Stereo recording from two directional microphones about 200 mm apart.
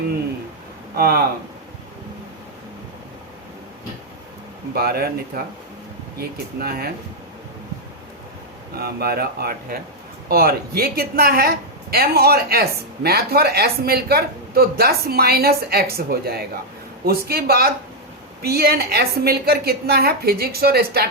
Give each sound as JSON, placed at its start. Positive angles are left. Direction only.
{"t": 0.9, "sound": "a woman's voice", "side_deg": -50}
{"t": 4.7, "sound": "a woman's voice", "side_deg": -50}
{"t": 6.1, "sound": "a woman's voice", "side_deg": -50}
{"t": 8.7, "sound": "a woman's voice", "side_deg": -50}